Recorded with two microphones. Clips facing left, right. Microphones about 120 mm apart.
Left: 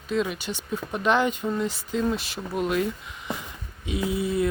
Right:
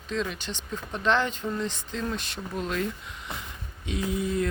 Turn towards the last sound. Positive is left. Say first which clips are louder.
# left 2 dB
turn(degrees=10)  # may be behind; listen again after turning